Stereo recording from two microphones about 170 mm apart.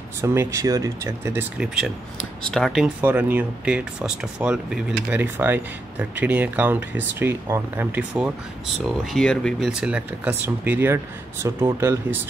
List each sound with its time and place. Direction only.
0.2 s speech: 15° right (ahead or behind)
2.4 s speech: 5° left (ahead or behind)
3.0 s speech: 10° right (ahead or behind)